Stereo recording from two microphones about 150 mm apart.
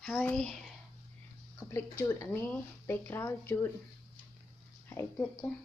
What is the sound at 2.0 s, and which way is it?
Speech, 20° left (ahead or behind).